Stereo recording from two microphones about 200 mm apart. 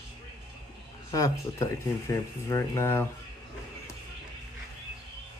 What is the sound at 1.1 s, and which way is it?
Speech, 15° left (ahead or behind).